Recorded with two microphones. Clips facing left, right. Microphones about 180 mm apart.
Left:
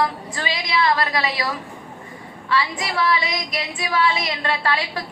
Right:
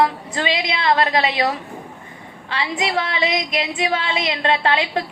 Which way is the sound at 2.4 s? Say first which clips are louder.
Even; 25° right (ahead or behind).